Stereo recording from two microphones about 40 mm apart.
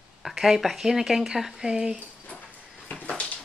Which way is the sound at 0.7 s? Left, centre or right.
Centre.